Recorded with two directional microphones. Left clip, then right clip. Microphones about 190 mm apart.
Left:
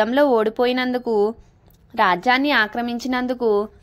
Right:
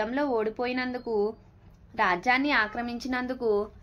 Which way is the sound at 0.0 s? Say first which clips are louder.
Left 11 dB; 45° left (ahead or behind).